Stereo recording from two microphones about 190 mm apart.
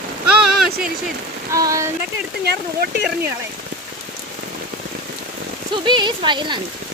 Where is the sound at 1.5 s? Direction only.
15° right (ahead or behind).